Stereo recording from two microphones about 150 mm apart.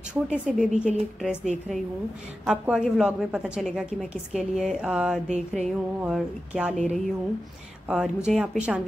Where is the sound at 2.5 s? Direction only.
5° right (ahead or behind).